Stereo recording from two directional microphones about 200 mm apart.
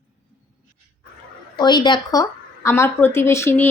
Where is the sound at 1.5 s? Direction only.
20° left (ahead or behind).